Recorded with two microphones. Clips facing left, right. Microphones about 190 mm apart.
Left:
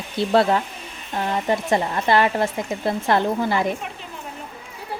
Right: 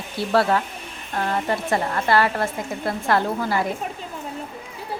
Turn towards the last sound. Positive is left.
turn(degrees=20)  # may be behind; listen again after turning